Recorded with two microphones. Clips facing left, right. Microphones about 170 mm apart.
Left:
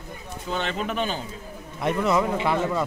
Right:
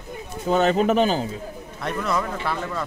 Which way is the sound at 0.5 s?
40° right (ahead or behind).